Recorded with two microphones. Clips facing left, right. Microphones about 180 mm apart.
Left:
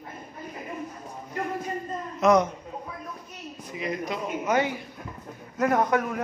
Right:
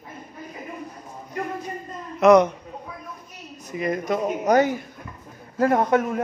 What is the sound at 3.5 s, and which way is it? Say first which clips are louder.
Speech: right 5 dB; 45° right (ahead or behind).